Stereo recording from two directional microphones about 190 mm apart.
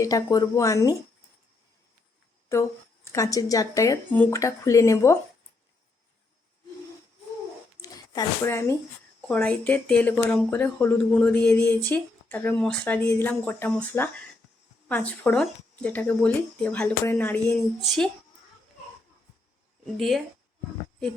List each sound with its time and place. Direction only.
0.0 s speech: 20° left (ahead or behind)
2.5 s speech: 15° left (ahead or behind)
7.8 s zipper: 15° left (ahead or behind)
9.2 s a woman's voice: 5° left (ahead or behind)
20.0 s a woman's voice: centre (ahead or behind)